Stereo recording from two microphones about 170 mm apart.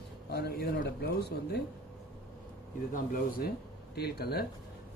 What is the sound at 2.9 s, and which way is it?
Speech, 60° left (ahead or behind).